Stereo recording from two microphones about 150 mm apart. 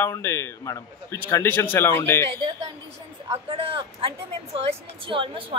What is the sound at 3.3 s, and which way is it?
Speech, 40° right (ahead or behind).